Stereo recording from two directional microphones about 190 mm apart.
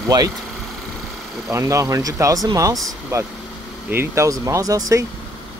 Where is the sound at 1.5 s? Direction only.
15° right (ahead or behind).